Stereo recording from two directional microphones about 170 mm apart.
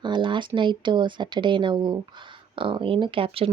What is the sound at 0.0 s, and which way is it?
Speech, 25° right (ahead or behind).